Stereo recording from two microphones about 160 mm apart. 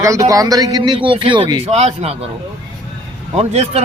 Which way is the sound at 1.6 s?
40° right (ahead or behind).